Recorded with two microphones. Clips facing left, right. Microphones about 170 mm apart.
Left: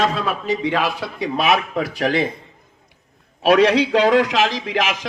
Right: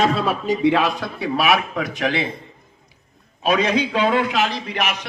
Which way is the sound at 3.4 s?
70° left (ahead or behind).